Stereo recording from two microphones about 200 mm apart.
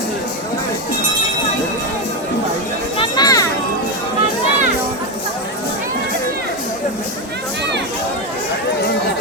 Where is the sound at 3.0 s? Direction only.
20° left (ahead or behind).